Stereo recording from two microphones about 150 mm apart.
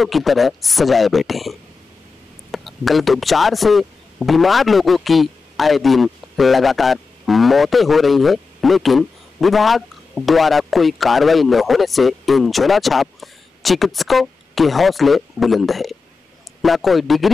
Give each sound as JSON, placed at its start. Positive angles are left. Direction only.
{"t": 0.0, "sound": "a man's voice", "side_deg": 0}